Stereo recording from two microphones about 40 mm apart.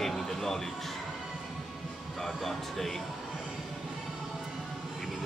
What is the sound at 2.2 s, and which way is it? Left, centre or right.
Speech, centre.